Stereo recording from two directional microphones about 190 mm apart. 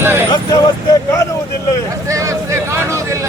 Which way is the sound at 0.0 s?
10° right (ahead or behind).